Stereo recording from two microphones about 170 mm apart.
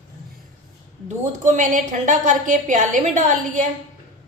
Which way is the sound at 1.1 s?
45° right (ahead or behind).